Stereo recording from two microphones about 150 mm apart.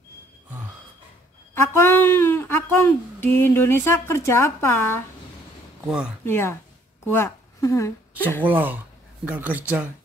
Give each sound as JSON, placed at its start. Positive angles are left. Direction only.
{"t": 1.5, "sound": "speech", "side_deg": 15}
{"t": 5.9, "sound": "speech", "side_deg": -5}
{"t": 6.2, "sound": "a woman's voice", "side_deg": 15}
{"t": 8.5, "sound": "speech", "side_deg": -10}